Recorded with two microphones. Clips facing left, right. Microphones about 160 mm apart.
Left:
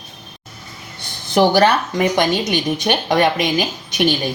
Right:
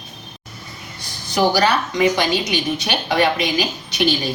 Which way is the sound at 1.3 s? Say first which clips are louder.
Left 3 dB; 50° left (ahead or behind).